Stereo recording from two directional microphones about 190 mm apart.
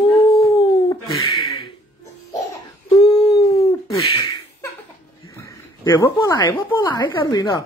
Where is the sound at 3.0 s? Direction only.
30° left (ahead or behind).